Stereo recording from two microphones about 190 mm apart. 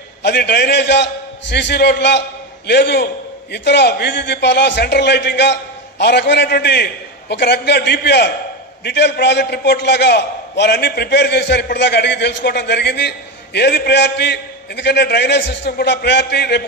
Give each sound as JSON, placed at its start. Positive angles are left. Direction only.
{"t": 0.2, "sound": "a man's voice", "side_deg": 60}